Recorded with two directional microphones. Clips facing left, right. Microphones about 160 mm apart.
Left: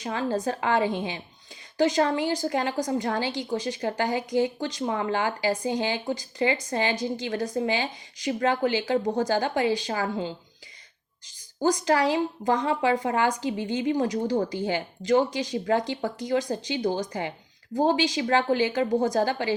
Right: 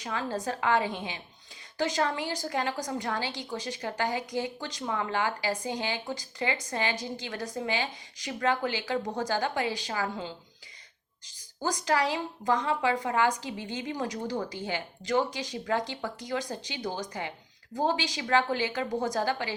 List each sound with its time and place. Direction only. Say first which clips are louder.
0.0 s a woman's voice: left 5 dB; 25° left (ahead or behind)
11.9 s a woman's voice: left 5 dB; 25° left (ahead or behind)